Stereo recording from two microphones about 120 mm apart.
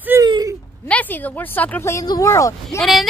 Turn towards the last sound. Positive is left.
turn(degrees=0)  # may be behind; listen again after turning